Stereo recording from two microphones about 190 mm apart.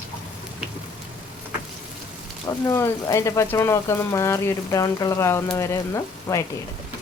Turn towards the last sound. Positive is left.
turn(degrees=15)  # may be behind; listen again after turning